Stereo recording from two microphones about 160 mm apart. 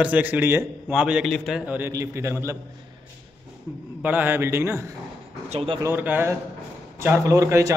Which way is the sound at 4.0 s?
10° right (ahead or behind).